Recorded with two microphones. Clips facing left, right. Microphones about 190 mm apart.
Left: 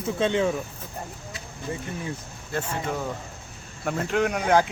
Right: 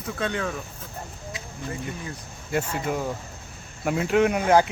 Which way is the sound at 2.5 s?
10° right (ahead or behind).